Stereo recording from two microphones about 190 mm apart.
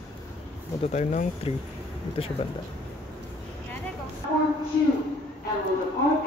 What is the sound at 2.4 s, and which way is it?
Speech, 30° left (ahead or behind).